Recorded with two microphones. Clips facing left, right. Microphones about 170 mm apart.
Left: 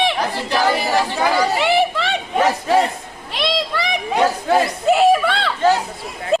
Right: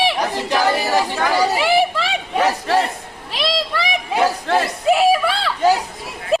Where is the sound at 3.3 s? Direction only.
Centre (ahead or behind).